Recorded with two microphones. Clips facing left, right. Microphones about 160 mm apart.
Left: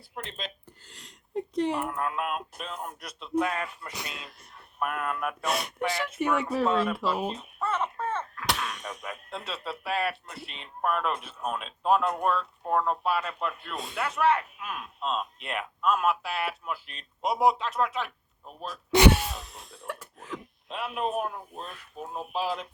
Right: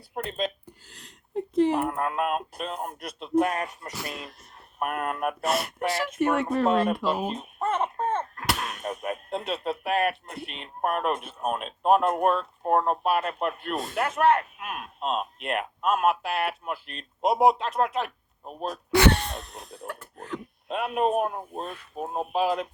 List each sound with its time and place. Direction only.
0.1 s speech: 45° right (ahead or behind)
0.9 s a sound: centre (ahead or behind)
1.8 s speech: 60° right (ahead or behind)
5.4 s speech: 5° right (ahead or behind)
7.3 s a sound: 50° right (ahead or behind)
8.4 s a sound: centre (ahead or behind)
8.8 s speech: 50° right (ahead or behind)
17.9 s speech: 40° right (ahead or behind)
18.9 s speech: 20° left (ahead or behind)
19.1 s speech: 5° left (ahead or behind)
20.1 s a sound: centre (ahead or behind)
20.7 s speech: 50° right (ahead or behind)